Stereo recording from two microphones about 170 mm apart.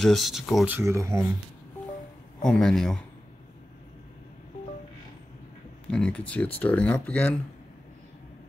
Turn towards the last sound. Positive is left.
turn(degrees=10)  # may be behind; listen again after turning